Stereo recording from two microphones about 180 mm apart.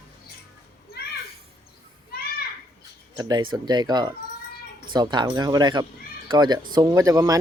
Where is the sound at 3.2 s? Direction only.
20° right (ahead or behind).